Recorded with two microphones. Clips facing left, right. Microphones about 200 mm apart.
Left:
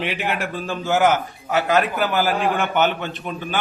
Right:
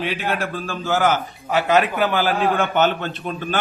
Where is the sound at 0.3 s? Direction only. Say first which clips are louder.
Even; 15° left (ahead or behind).